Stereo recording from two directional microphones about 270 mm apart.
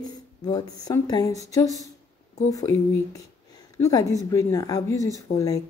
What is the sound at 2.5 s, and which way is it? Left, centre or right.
Speech, centre.